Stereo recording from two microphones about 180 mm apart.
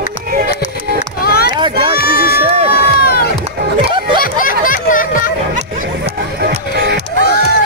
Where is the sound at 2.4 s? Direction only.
35° right (ahead or behind).